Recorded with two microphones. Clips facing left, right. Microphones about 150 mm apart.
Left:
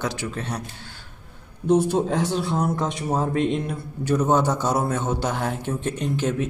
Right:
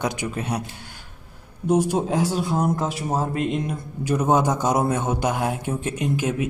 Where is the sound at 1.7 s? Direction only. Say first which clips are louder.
Left 1 dB; 10° right (ahead or behind).